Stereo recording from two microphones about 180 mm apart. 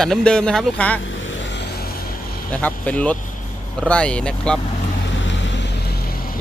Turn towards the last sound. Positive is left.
turn(degrees=55)  # may be behind; listen again after turning